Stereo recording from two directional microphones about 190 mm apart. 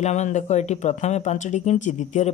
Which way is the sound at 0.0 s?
35° left (ahead or behind).